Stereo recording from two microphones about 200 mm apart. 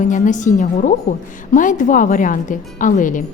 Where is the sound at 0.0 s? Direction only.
40° left (ahead or behind).